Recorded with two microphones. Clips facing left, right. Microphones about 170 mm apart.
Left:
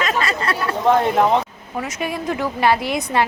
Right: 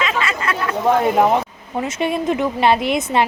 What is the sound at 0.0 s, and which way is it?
Chatter, 40° left (ahead or behind).